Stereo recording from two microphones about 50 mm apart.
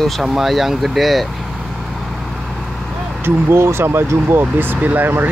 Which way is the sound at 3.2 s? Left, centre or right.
Right.